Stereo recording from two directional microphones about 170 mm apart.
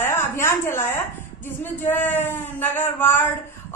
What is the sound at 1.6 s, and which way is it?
A woman's voice, 10° left (ahead or behind).